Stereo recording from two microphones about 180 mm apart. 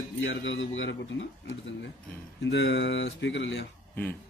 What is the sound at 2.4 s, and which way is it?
Speech, 85° left.